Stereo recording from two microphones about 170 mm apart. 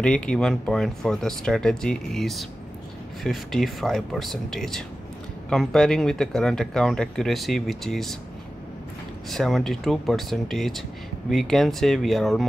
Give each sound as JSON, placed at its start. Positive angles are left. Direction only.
{"t": 0.0, "sound": "speech", "side_deg": 5}
{"t": 9.3, "sound": "speech", "side_deg": 0}